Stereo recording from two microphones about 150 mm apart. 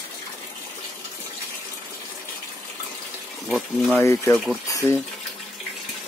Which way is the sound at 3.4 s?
Centre (ahead or behind).